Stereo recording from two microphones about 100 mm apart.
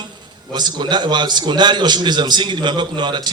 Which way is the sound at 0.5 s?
45° right (ahead or behind).